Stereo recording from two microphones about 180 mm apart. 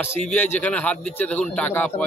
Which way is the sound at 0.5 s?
10° left (ahead or behind).